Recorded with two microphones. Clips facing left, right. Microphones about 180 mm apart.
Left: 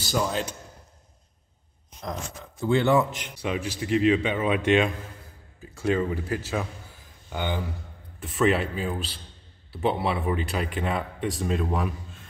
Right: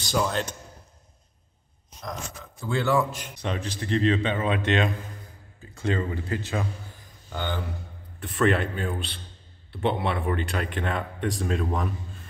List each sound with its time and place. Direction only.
0.0 s speech: 5° left (ahead or behind)
2.6 s a man's voice: 20° left (ahead or behind)
3.3 s a man's voice: 10° left (ahead or behind)